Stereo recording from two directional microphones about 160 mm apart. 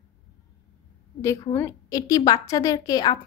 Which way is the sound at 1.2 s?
20° left (ahead or behind).